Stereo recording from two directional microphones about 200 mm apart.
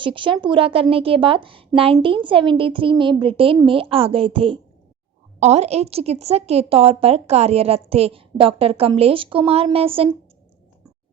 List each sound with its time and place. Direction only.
0.0 s a woman's voice: 25° right (ahead or behind)